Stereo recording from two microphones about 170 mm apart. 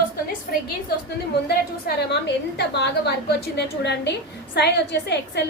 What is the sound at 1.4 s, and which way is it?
A woman's voice, 70° left (ahead or behind).